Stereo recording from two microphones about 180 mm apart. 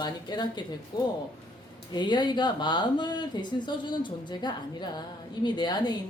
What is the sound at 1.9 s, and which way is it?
Speech, 25° left (ahead or behind).